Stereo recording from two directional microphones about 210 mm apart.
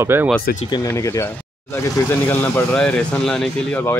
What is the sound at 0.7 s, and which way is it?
Speech, 15° left (ahead or behind).